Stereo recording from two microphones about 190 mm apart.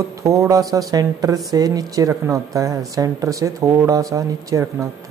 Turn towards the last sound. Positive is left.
turn(degrees=-15)  # may be behind; listen again after turning